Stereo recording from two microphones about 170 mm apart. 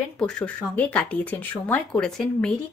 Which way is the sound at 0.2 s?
5° left (ahead or behind).